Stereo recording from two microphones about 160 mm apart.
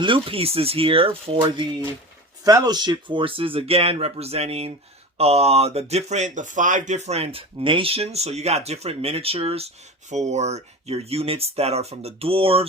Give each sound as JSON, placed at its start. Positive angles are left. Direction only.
{"t": 0.0, "sound": "speech", "side_deg": -35}
{"t": 2.4, "sound": "speech", "side_deg": -20}